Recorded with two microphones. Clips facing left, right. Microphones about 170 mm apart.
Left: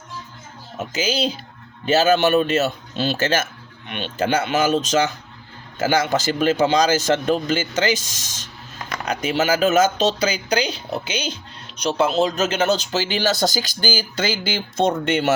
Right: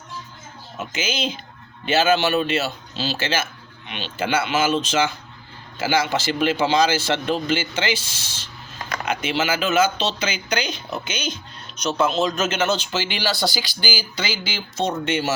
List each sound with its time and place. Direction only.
0.8 s speech: 35° left (ahead or behind); by 15.3 s 55° left (ahead or behind)